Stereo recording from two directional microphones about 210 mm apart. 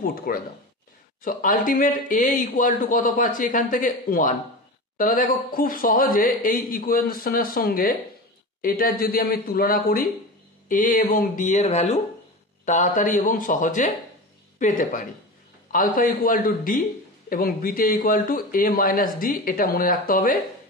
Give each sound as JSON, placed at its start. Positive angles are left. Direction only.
{"t": 0.0, "sound": "speech", "side_deg": 45}